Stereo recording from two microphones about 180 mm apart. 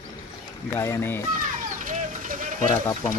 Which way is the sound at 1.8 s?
45° right (ahead or behind).